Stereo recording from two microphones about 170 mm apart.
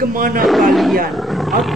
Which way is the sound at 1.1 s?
Centre (ahead or behind).